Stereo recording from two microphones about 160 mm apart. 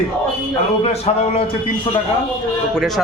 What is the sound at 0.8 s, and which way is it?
Speech, 40° left (ahead or behind).